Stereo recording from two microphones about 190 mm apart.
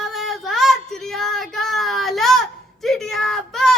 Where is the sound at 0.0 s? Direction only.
Centre (ahead or behind).